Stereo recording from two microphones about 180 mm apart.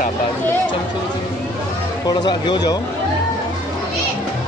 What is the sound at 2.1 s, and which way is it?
Speech, 25° left (ahead or behind).